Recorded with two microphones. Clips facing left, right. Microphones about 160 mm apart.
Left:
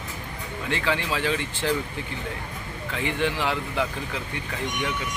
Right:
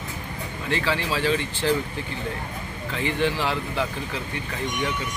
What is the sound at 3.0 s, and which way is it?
Speech, 15° left (ahead or behind).